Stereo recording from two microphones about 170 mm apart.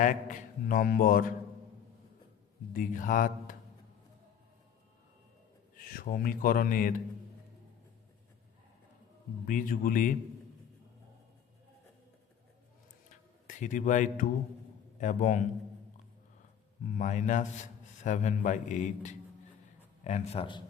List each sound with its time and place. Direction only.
0.0 s a man's voice: 50° left (ahead or behind)
2.7 s a man's voice: 50° left (ahead or behind)
5.7 s speech: 60° left (ahead or behind)
9.5 s a man's voice: 50° left (ahead or behind)
13.5 s a man's voice: 50° left (ahead or behind)
16.8 s a man's voice: 45° left (ahead or behind)